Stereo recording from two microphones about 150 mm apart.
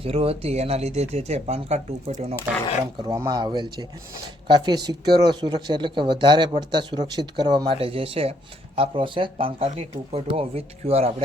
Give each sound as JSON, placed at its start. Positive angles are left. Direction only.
{"t": 0.0, "sound": "speech", "side_deg": -40}
{"t": 3.1, "sound": "speech", "side_deg": -25}